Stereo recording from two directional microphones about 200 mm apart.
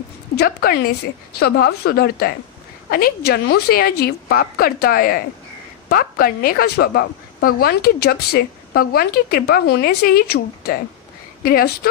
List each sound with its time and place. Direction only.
0.4 s a woman's voice: 50° left (ahead or behind)